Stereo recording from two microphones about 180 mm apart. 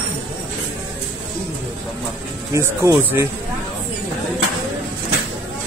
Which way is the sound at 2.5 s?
15° right (ahead or behind).